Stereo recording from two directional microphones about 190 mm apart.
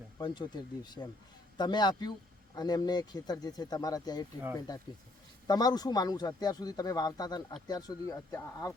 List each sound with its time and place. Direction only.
0.2 s speech: 25° left (ahead or behind)
5.5 s speech: 20° left (ahead or behind)